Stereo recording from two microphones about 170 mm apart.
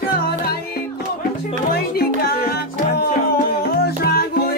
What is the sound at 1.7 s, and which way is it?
Music, 65° left (ahead or behind).